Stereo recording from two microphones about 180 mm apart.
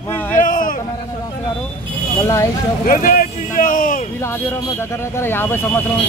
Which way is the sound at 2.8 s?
50° left (ahead or behind).